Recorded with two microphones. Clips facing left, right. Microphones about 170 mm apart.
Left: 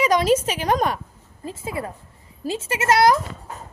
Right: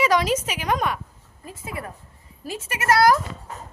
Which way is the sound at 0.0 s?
20° left (ahead or behind).